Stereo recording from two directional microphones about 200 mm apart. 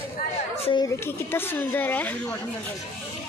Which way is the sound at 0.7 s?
20° left (ahead or behind).